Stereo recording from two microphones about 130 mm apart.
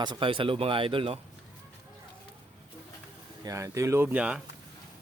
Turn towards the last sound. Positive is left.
turn(degrees=-10)  # may be behind; listen again after turning